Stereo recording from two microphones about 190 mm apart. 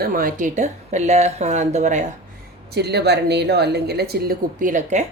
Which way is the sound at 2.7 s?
60° right (ahead or behind).